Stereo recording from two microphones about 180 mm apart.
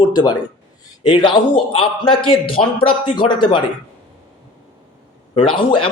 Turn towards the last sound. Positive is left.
turn(degrees=30)  # may be behind; listen again after turning